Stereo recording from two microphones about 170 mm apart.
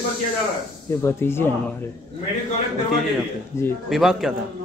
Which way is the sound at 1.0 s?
15° left (ahead or behind).